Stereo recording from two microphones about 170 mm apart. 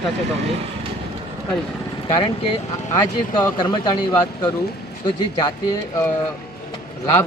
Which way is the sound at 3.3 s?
25° left (ahead or behind).